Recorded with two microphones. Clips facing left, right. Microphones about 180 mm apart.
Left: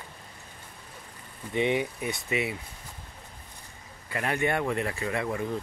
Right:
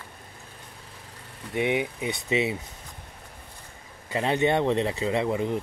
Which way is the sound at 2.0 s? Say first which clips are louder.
Right 4 dB; 20° right (ahead or behind).